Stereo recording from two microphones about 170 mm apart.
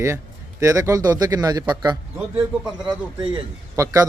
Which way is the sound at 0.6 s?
20° right (ahead or behind).